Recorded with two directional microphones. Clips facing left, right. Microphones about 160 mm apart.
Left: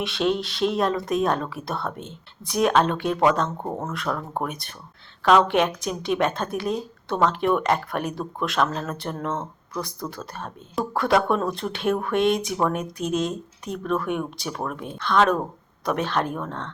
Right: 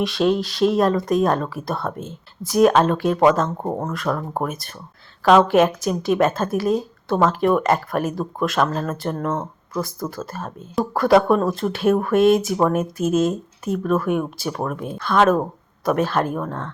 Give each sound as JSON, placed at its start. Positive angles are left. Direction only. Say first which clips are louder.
{"t": 0.0, "sound": "speech", "louder": "right 5 dB", "side_deg": 0}
{"t": 3.6, "sound": "speech", "louder": "right 4 dB", "side_deg": -20}
{"t": 3.9, "sound": "speech", "louder": "right 4 dB", "side_deg": 0}
{"t": 9.0, "sound": "speech", "louder": "right 4 dB", "side_deg": -40}
{"t": 9.8, "sound": "speech", "louder": "right 5 dB", "side_deg": 0}